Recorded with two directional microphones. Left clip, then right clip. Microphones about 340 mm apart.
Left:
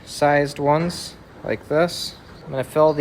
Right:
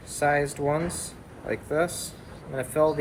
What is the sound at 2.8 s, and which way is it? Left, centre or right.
Speech, left.